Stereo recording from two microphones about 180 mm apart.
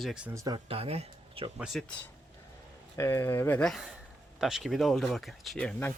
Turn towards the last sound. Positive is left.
turn(degrees=10)  # may be behind; listen again after turning